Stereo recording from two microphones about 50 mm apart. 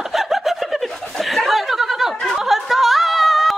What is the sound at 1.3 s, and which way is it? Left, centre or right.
Chuckle, centre.